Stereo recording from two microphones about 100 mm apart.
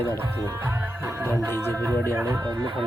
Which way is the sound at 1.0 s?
20° right (ahead or behind).